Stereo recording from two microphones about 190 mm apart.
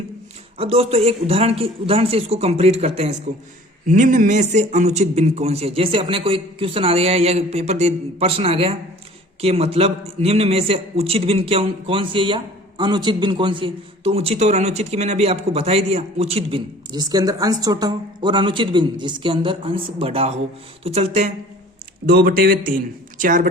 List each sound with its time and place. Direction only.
0.6 s a man's voice: 30° right (ahead or behind)
22.0 s speech: 55° right (ahead or behind)